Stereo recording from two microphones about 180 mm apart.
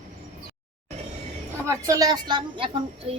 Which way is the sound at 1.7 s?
20° right (ahead or behind).